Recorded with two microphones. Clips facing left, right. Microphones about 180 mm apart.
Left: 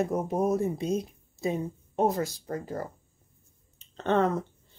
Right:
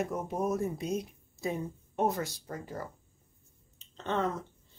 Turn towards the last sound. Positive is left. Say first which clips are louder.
# left 7 dB
turn(degrees=60)  # may be behind; listen again after turning